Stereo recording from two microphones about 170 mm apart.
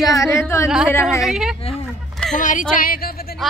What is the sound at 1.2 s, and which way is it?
Speech, 5° right (ahead or behind).